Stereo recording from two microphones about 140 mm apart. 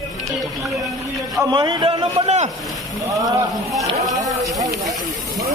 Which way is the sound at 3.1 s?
25° right (ahead or behind).